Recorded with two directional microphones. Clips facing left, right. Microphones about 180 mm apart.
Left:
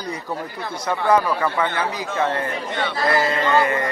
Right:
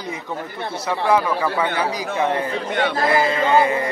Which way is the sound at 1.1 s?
10° right (ahead or behind).